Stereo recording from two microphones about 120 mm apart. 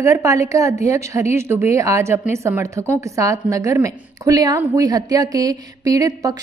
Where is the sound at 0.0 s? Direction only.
25° right (ahead or behind).